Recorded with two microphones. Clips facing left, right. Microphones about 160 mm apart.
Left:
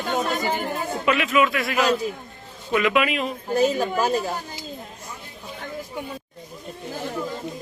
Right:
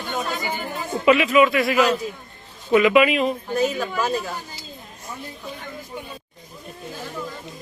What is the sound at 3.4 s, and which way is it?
Speech, 35° left (ahead or behind).